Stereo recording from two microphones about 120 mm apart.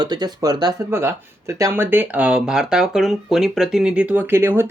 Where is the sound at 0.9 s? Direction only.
20° right (ahead or behind).